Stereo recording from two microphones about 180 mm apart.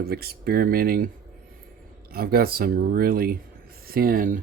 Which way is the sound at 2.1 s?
55° right (ahead or behind).